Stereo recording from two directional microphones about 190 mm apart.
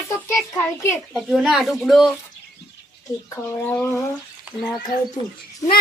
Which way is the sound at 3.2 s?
10° left (ahead or behind).